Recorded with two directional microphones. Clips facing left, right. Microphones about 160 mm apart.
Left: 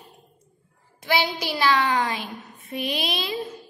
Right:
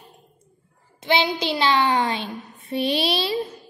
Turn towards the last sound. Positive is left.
turn(degrees=-30)  # may be behind; listen again after turning